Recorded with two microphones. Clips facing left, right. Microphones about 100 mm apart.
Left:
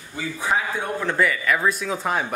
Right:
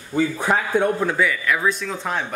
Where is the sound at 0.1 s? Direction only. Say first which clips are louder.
Right 5 dB; 60° right (ahead or behind).